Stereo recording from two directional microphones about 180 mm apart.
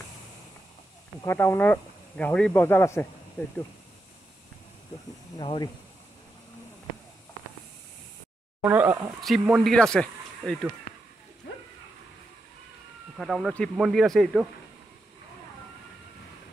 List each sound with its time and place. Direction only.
1.2 s speech: 15° left (ahead or behind)
5.4 s speech: 30° left (ahead or behind)
8.6 s speech: 10° right (ahead or behind)
9.2 s speech: centre (ahead or behind)
13.2 s speech: centre (ahead or behind)